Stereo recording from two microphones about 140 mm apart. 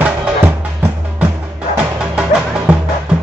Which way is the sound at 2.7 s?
10° right (ahead or behind).